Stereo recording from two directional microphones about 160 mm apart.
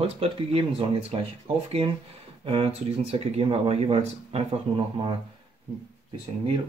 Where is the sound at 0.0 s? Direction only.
40° right (ahead or behind).